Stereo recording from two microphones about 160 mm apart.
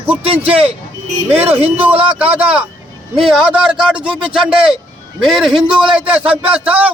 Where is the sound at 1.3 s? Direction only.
40° right (ahead or behind).